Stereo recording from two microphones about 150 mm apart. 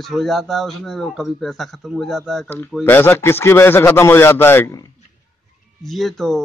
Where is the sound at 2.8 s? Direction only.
15° left (ahead or behind).